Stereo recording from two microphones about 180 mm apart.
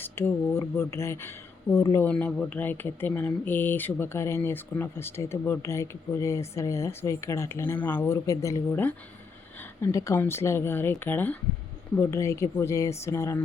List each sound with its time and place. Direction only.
0.0 s speech: 15° left (ahead or behind)
2.0 s speech: 5° left (ahead or behind)